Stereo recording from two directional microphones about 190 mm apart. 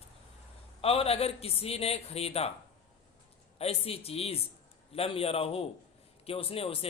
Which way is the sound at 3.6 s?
30° left (ahead or behind).